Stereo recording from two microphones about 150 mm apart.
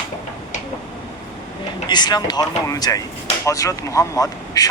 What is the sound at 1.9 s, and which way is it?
Speech, 30° left (ahead or behind).